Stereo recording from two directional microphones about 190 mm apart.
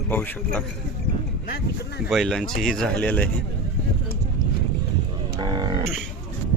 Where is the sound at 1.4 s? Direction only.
55° left (ahead or behind).